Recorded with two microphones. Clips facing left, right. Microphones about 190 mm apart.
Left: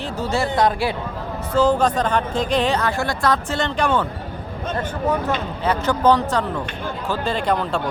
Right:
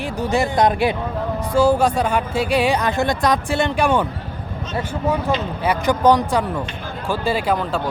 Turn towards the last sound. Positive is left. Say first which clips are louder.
# right 1 dB
turn(degrees=-5)  # may be behind; listen again after turning